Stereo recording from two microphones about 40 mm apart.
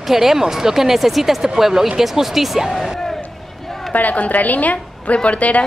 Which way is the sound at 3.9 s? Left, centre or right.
Left.